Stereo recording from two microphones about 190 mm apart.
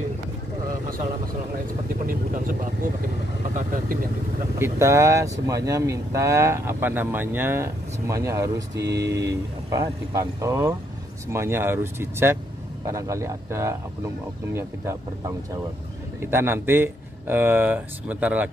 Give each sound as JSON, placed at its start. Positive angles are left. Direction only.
{"t": 2.0, "sound": "speech", "side_deg": -45}
{"t": 4.6, "sound": "speech", "side_deg": -15}